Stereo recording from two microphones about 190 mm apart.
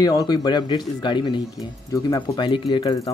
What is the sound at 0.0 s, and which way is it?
Speech, 20° left (ahead or behind).